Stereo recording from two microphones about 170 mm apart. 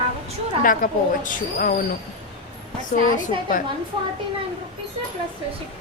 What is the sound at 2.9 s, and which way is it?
Speech, 45° left (ahead or behind).